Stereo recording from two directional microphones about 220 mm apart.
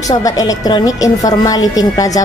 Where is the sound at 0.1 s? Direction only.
15° left (ahead or behind).